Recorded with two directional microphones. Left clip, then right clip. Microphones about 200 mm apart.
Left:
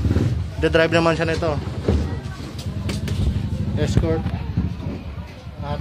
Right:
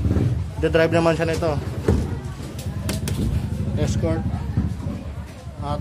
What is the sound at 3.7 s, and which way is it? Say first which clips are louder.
Speech: left 2 dB; 15° right (ahead or behind).